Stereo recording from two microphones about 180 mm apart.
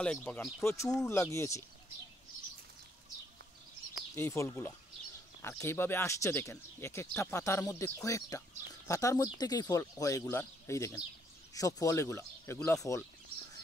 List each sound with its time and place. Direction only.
0.0 s speech: 5° left (ahead or behind)
4.1 s speech: 15° left (ahead or behind)